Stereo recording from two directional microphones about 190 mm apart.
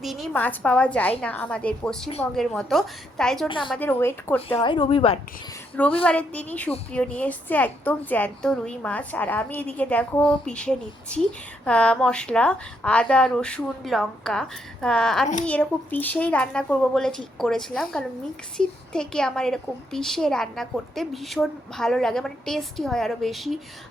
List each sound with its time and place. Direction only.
0.0 s a woman's voice: centre (ahead or behind)
3.8 s a woman's voice: 10° left (ahead or behind)
4.6 s speech: 25° left (ahead or behind)
6.1 s a woman's voice: 5° left (ahead or behind)